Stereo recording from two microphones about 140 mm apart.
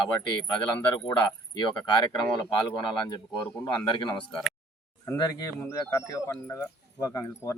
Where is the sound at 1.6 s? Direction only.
30° left (ahead or behind).